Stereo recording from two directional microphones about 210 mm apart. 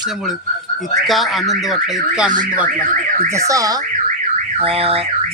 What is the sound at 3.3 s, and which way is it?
Speech, 15° right (ahead or behind).